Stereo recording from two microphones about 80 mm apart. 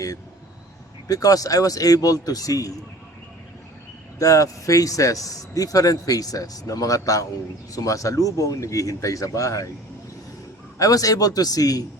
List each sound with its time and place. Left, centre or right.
1.0 s a man's voice: left
4.2 s a man's voice: left
10.8 s a man's voice: left